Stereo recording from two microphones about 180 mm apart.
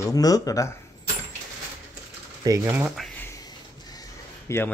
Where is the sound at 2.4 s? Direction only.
20° right (ahead or behind).